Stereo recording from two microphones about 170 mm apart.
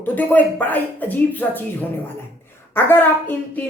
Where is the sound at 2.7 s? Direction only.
10° left (ahead or behind).